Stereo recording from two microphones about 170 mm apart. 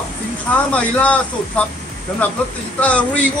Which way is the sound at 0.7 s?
10° left (ahead or behind).